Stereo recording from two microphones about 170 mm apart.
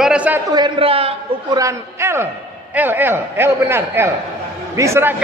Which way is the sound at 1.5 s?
15° right (ahead or behind).